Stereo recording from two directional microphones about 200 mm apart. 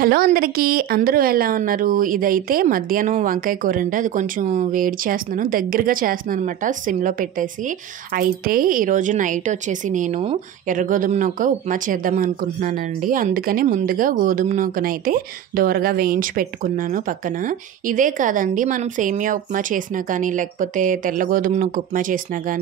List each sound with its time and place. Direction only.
0.0 s a woman's voice: 45° right (ahead or behind)